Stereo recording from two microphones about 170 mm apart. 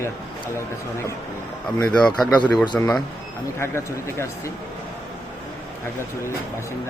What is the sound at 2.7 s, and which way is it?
Speech, 15° left (ahead or behind).